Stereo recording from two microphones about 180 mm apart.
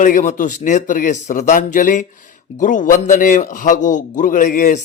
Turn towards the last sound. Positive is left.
turn(degrees=45)  # may be behind; listen again after turning